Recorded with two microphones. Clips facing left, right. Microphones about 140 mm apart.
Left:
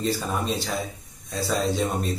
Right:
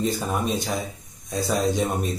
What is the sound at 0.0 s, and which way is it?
Speech, 15° right (ahead or behind).